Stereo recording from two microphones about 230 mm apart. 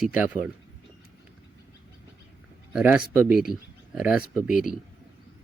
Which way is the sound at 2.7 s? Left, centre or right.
Centre.